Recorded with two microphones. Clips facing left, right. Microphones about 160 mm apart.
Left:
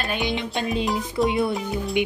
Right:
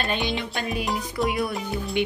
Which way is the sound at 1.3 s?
25° left (ahead or behind).